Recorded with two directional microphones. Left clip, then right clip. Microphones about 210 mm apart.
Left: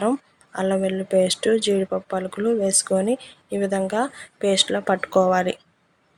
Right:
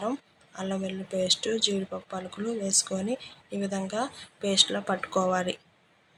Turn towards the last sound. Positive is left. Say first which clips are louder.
# left 8 dB
turn(degrees=30)  # may be behind; listen again after turning